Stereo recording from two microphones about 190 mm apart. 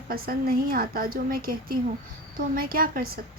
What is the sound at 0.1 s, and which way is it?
A woman's voice, 50° right (ahead or behind).